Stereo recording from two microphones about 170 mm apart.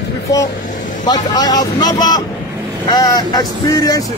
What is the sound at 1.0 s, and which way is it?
A man's voice, 25° left (ahead or behind).